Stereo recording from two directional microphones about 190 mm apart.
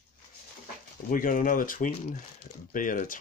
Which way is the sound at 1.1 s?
45° left (ahead or behind).